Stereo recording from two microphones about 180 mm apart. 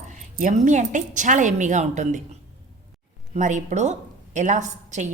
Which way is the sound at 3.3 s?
45° right (ahead or behind).